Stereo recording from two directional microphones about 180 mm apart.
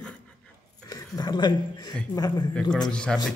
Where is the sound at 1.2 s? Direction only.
25° left (ahead or behind).